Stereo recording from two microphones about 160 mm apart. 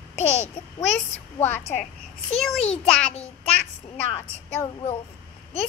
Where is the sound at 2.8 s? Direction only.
5° left (ahead or behind).